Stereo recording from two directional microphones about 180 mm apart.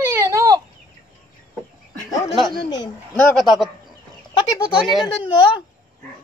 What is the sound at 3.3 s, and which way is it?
Speech, centre (ahead or behind).